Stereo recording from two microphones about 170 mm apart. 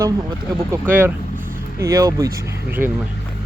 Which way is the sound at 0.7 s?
10° right (ahead or behind).